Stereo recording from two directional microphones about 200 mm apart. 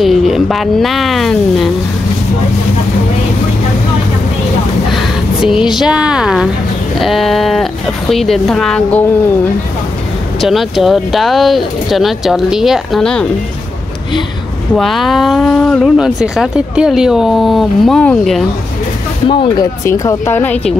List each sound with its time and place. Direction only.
0.0 s speech: centre (ahead or behind)
4.9 s speech: 5° right (ahead or behind)
10.4 s speech: centre (ahead or behind)
14.8 s speech: centre (ahead or behind)
19.2 s speech: 25° left (ahead or behind); by 20.7 s 5° left (ahead or behind)